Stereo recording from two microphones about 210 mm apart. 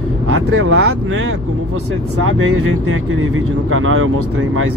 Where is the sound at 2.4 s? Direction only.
80° right.